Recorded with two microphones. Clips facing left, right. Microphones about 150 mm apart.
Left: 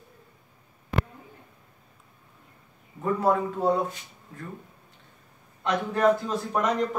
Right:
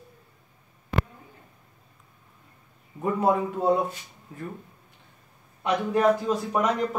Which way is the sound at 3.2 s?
15° right (ahead or behind).